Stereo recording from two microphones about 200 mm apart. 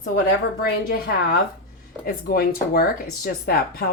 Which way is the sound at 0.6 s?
50° left (ahead or behind).